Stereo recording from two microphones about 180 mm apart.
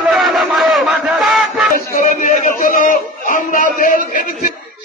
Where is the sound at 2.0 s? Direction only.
45° left (ahead or behind).